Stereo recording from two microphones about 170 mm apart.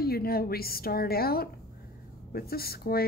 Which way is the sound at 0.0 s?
65° left (ahead or behind).